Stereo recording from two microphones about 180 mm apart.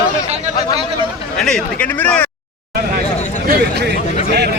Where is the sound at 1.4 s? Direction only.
5° left (ahead or behind).